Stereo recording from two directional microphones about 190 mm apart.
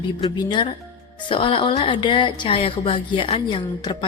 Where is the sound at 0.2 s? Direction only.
25° left (ahead or behind).